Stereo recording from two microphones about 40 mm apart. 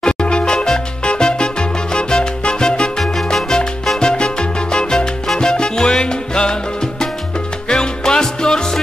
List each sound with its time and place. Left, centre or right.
0.0 s music: left
3.0 s music: centre
4.0 s music: left
5.4 s salsa music: centre
7.6 s music: centre